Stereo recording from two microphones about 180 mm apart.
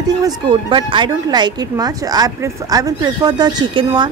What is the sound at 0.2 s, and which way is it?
Speech, 25° right (ahead or behind).